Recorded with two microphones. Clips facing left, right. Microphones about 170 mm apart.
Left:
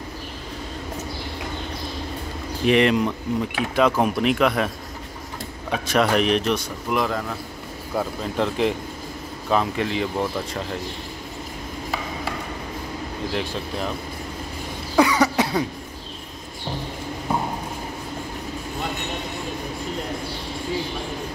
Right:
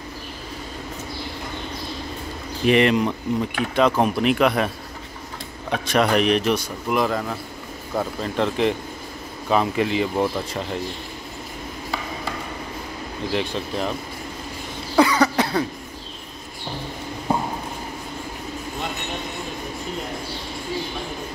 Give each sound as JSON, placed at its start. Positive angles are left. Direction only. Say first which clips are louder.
{"t": 2.6, "sound": "a man's voice", "louder": "right 1 dB", "side_deg": 0}
{"t": 5.7, "sound": "a man's voice", "louder": "right 1 dB", "side_deg": 0}
{"t": 13.3, "sound": "a man's voice", "louder": "right 4 dB", "side_deg": 0}
{"t": 15.0, "sound": "cough", "louder": "right 1 dB", "side_deg": 15}